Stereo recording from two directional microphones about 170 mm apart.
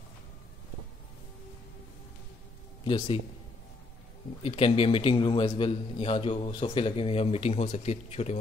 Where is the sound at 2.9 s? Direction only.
30° left (ahead or behind).